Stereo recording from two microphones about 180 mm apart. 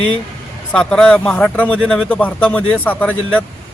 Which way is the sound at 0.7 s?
5° left (ahead or behind).